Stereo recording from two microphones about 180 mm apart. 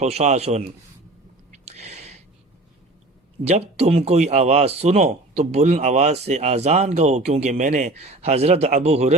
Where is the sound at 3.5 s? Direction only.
35° right (ahead or behind).